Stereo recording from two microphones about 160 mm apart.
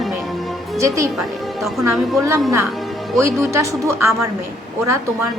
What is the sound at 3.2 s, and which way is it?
Speech, 20° right (ahead or behind).